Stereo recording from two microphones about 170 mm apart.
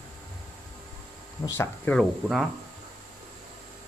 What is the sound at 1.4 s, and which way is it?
Speech, 10° left (ahead or behind).